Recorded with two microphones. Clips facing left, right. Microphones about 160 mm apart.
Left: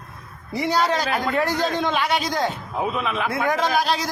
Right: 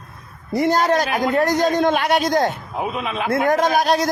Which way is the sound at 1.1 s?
15° right (ahead or behind).